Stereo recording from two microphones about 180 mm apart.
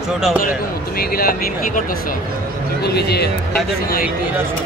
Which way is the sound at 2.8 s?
65° left (ahead or behind).